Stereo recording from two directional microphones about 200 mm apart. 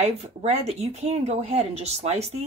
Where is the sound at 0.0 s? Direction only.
30° right (ahead or behind).